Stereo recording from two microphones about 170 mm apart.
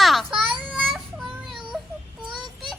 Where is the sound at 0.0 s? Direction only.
Centre (ahead or behind).